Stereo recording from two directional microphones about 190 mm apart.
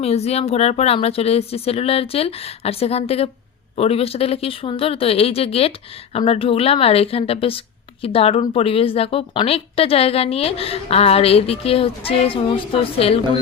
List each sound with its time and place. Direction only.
0.0 s a woman's voice: 35° left (ahead or behind)